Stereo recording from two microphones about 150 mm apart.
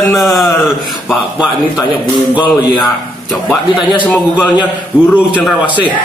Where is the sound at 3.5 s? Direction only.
Centre (ahead or behind).